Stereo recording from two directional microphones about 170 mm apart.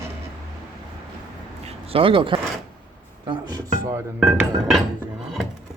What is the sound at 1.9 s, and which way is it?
Speech, 30° right (ahead or behind).